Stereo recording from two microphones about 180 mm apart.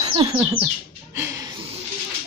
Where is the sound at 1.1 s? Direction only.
15° right (ahead or behind).